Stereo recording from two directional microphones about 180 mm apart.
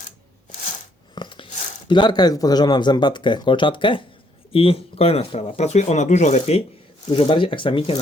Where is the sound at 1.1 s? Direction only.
25° left (ahead or behind).